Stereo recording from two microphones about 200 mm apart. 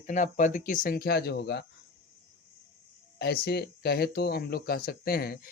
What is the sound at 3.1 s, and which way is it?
Speech, 55° left (ahead or behind).